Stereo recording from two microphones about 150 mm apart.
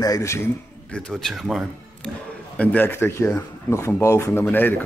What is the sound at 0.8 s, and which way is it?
Speech, 5° left (ahead or behind).